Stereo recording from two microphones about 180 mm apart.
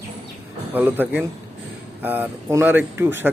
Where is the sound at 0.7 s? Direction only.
10° right (ahead or behind).